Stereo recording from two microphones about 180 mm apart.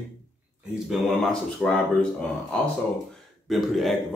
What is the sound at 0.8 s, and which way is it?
Speech, centre (ahead or behind).